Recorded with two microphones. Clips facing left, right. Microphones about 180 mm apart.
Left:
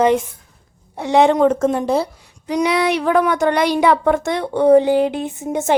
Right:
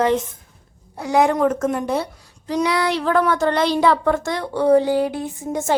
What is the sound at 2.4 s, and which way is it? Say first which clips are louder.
Speech: left 3 dB; 20° left (ahead or behind).